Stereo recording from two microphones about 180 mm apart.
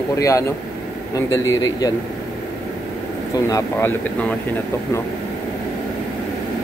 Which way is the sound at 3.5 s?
15° left (ahead or behind).